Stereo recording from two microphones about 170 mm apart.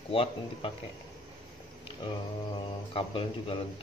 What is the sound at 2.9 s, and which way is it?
Speech, 30° left (ahead or behind).